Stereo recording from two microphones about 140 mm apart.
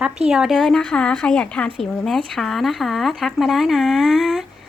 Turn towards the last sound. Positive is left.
turn(degrees=0)  # may be behind; listen again after turning